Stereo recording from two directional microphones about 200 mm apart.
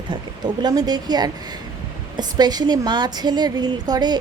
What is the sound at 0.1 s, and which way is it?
A woman's voice, 20° right (ahead or behind).